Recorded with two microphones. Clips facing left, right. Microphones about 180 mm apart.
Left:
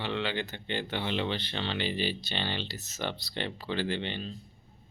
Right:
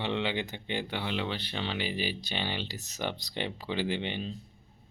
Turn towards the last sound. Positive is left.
turn(degrees=-15)  # may be behind; listen again after turning